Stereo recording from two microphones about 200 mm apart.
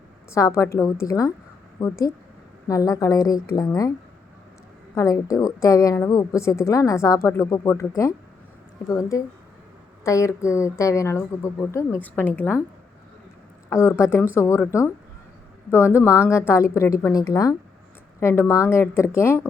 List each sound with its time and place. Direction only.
0.3 s a woman's voice: 15° left (ahead or behind)
4.9 s a woman's voice: 15° left (ahead or behind)
13.7 s a woman's voice: 10° left (ahead or behind)